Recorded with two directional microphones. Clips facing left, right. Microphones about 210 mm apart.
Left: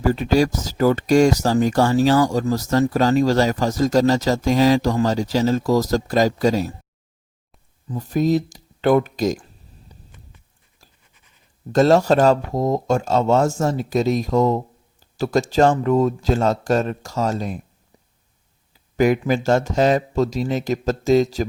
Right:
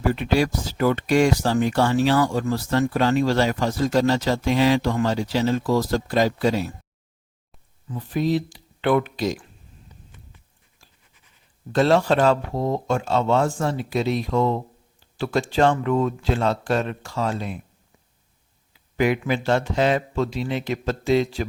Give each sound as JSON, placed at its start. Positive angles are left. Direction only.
{"t": 0.0, "sound": "speech", "side_deg": 40}
{"t": 7.9, "sound": "speech", "side_deg": 40}
{"t": 9.9, "sound": "a sound", "side_deg": 35}
{"t": 11.7, "sound": "speech", "side_deg": 40}
{"t": 18.7, "sound": "speech", "side_deg": 40}